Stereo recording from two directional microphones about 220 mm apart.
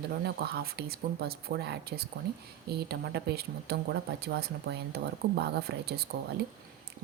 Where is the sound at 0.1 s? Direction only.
45° right (ahead or behind).